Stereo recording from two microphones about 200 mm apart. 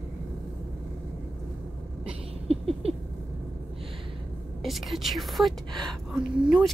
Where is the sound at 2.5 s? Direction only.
30° right (ahead or behind).